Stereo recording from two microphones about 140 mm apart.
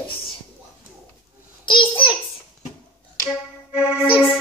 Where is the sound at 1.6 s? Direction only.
35° left (ahead or behind).